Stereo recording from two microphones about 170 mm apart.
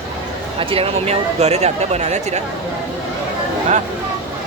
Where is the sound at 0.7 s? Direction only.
35° right (ahead or behind).